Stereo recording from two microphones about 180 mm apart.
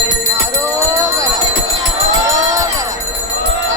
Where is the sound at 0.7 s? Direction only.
15° right (ahead or behind).